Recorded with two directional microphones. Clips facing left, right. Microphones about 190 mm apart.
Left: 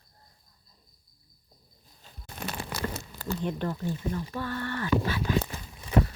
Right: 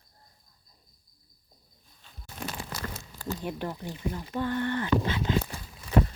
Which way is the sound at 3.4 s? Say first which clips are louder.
Left 5 dB; 15° right (ahead or behind).